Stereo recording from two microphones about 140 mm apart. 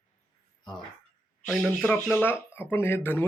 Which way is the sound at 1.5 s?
Centre (ahead or behind).